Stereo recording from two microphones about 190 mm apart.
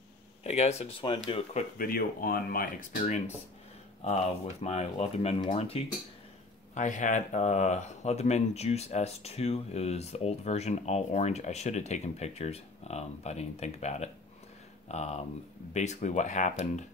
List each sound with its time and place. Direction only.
0.4 s speech: 35° left (ahead or behind)
1.5 s speech: 50° left (ahead or behind)
4.0 s speech: 35° left (ahead or behind)